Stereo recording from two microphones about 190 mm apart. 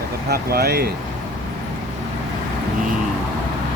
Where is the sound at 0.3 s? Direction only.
55° right (ahead or behind).